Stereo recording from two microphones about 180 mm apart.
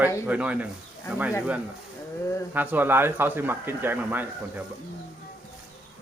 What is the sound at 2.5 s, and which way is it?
Speech, 10° right (ahead or behind).